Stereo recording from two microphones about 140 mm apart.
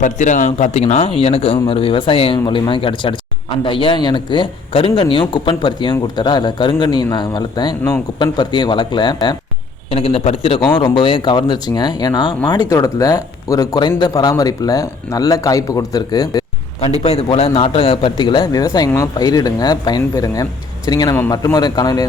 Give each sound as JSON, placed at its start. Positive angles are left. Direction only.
{"t": 0.0, "sound": "a man's voice", "side_deg": 60}
{"t": 9.9, "sound": "a man's voice", "side_deg": 45}
{"t": 16.8, "sound": "a man's voice", "side_deg": 45}